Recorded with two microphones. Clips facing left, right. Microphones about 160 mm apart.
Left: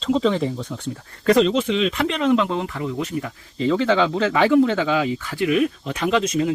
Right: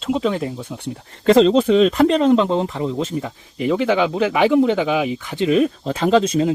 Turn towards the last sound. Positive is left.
turn(degrees=-30)  # may be behind; listen again after turning